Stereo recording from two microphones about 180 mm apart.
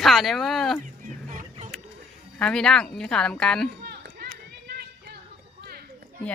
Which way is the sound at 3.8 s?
60° right (ahead or behind).